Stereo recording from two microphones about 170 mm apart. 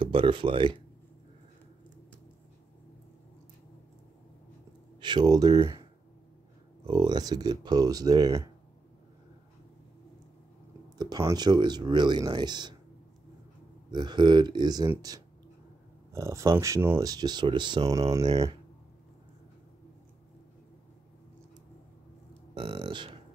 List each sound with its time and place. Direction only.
0.0 s speech: 30° right (ahead or behind)
5.0 s speech: 25° right (ahead or behind)
6.9 s speech: 25° right (ahead or behind)
11.0 s speech: 20° right (ahead or behind)
13.8 s speech: 25° right (ahead or behind)
22.5 s speech: 30° right (ahead or behind)